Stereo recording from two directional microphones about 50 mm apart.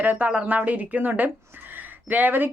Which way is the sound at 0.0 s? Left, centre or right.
Right.